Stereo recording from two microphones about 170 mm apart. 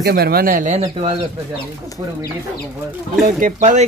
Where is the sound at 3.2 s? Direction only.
45° right (ahead or behind).